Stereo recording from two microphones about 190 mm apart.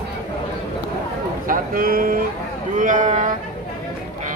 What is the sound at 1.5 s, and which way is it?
Speech, 50° right (ahead or behind).